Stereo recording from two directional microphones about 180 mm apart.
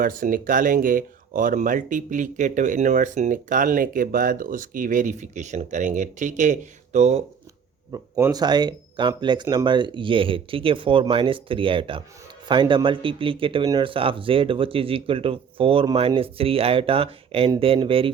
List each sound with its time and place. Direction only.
0.0 s speech: 50° right (ahead or behind)
7.9 s a man's voice: 20° right (ahead or behind)